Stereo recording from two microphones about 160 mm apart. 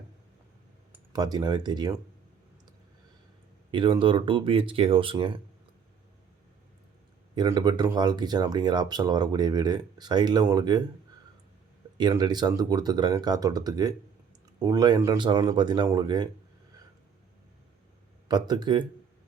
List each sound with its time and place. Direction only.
1.1 s speech: 25° right (ahead or behind)
3.7 s speech: 30° right (ahead or behind)
7.3 s speech: 25° right (ahead or behind)
11.9 s speech: 25° right (ahead or behind)
18.3 s speech: 25° right (ahead or behind)